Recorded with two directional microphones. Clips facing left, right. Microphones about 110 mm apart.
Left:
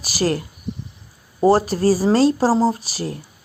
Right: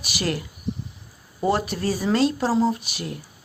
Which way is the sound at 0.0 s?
35° left (ahead or behind).